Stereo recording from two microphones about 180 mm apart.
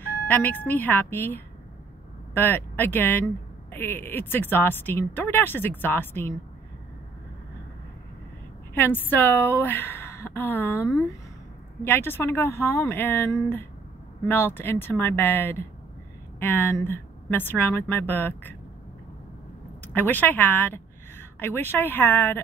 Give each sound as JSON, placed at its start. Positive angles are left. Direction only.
{"t": 0.0, "sound": "speech", "side_deg": 10}
{"t": 8.7, "sound": "a woman's voice", "side_deg": 10}
{"t": 19.9, "sound": "speech", "side_deg": 10}